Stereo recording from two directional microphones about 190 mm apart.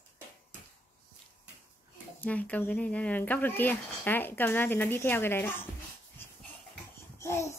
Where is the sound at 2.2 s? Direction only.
10° left (ahead or behind).